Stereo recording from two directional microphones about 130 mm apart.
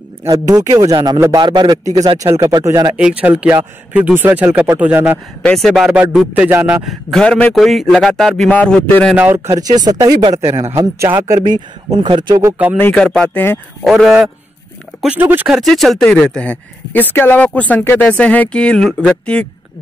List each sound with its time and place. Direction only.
0.2 s speech: 25° right (ahead or behind)
3.0 s speech: 10° right (ahead or behind)
5.4 s speech: 5° left (ahead or behind)
6.5 s speech: 20° right (ahead or behind)
6.8 s speech: centre (ahead or behind)
9.1 s speech: 15° right (ahead or behind)
9.6 s speech: 30° right (ahead or behind)
11.4 s speech: 35° right (ahead or behind)
12.7 s speech: 10° left (ahead or behind)
15.0 s speech: 10° right (ahead or behind)
15.4 s speech: centre (ahead or behind)